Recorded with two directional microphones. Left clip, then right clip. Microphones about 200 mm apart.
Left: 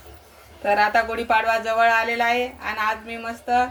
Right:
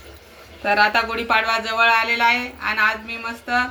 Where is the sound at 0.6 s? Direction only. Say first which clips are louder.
Right 2 dB; 25° left (ahead or behind).